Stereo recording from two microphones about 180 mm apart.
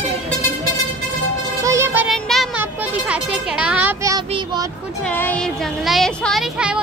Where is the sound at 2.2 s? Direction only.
Centre (ahead or behind).